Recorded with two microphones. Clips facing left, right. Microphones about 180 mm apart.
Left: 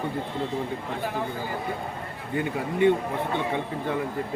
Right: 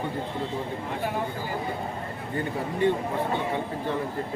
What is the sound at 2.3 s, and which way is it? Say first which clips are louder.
Speech: left 3 dB; 15° left (ahead or behind).